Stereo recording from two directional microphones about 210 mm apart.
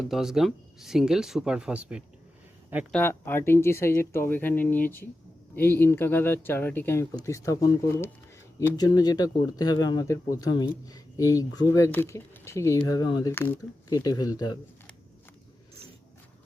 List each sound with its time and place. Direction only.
0.1 s speech: centre (ahead or behind)
2.9 s speech: 10° left (ahead or behind)